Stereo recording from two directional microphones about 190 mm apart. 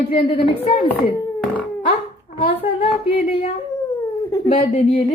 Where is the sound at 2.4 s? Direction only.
25° left (ahead or behind).